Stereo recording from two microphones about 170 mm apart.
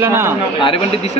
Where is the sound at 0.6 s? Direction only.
30° left (ahead or behind).